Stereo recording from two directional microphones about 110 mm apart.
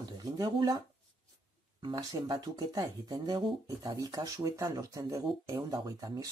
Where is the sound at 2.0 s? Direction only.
40° right (ahead or behind).